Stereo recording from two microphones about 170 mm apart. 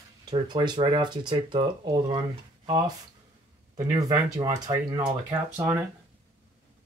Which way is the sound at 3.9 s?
20° right (ahead or behind).